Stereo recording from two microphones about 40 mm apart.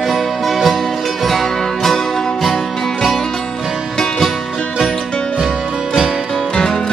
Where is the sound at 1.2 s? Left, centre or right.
Centre.